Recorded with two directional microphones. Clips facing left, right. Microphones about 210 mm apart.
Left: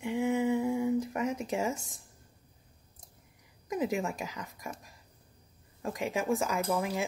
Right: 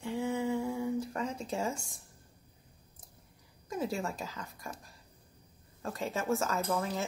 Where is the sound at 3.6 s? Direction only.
15° left (ahead or behind).